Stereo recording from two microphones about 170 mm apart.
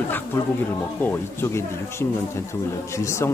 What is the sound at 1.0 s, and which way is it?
Speech, 15° left (ahead or behind).